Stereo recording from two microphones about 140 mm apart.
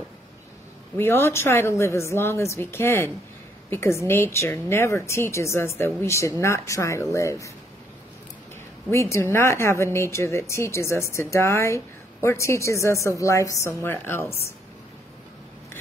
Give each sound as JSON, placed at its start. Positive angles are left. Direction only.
{"t": 0.9, "sound": "a woman's voice", "side_deg": 15}
{"t": 8.9, "sound": "speech", "side_deg": 20}